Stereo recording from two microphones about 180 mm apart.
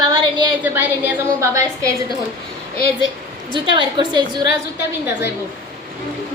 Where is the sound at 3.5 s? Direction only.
25° right (ahead or behind).